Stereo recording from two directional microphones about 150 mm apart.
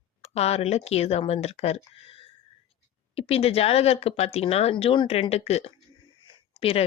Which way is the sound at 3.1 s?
40° left (ahead or behind).